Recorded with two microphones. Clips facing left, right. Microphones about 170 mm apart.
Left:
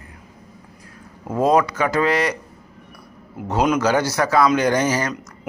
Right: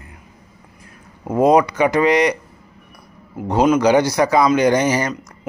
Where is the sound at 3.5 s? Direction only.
10° right (ahead or behind).